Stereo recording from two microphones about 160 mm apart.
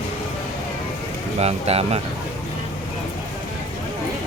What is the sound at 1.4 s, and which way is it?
Speech, 40° right (ahead or behind).